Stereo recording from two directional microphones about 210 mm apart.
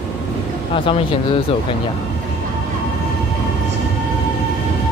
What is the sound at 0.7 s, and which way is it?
Speech, 25° left (ahead or behind).